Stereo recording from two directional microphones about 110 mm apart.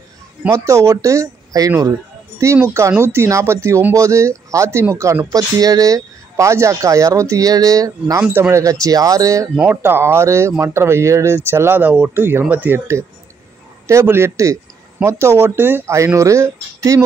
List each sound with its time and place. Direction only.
0.5 s speech: 25° right (ahead or behind)
8.2 s speech: 20° right (ahead or behind)
9.6 s speech: 20° right (ahead or behind)